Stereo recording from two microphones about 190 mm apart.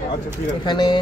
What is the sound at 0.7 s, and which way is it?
Speech, 20° left (ahead or behind).